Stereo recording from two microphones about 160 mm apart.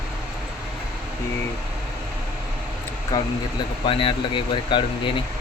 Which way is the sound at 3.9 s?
35° left (ahead or behind).